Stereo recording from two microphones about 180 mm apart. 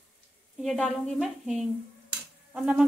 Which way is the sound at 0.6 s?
Centre (ahead or behind).